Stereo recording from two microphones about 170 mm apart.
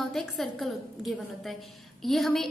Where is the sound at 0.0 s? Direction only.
Centre (ahead or behind).